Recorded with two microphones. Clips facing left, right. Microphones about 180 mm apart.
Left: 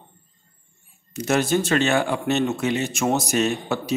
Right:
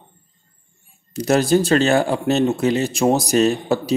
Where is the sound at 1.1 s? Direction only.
35° right (ahead or behind).